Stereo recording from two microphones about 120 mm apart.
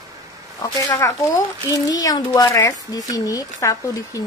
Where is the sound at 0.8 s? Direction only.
30° left (ahead or behind).